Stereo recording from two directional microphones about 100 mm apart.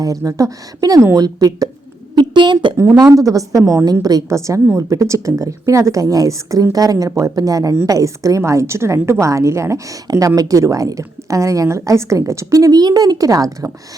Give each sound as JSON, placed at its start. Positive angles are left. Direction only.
{"t": 0.0, "sound": "a woman's voice", "side_deg": -35}
{"t": 2.1, "sound": "a woman's voice", "side_deg": -50}
{"t": 2.7, "sound": "a woman's voice", "side_deg": -35}
{"t": 3.6, "sound": "a woman's voice", "side_deg": -20}
{"t": 4.0, "sound": "a woman's voice", "side_deg": -35}